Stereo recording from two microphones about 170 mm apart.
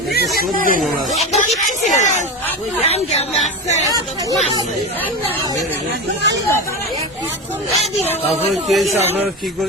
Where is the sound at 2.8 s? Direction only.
40° left (ahead or behind).